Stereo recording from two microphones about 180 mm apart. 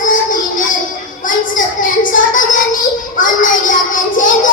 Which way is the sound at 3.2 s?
45° left (ahead or behind).